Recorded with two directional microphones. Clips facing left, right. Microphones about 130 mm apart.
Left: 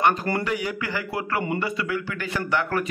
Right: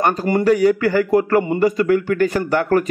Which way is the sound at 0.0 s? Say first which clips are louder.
Right 6 dB; 35° right (ahead or behind).